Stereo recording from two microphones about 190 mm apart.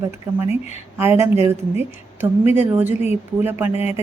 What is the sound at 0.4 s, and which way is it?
Speech, 35° left (ahead or behind).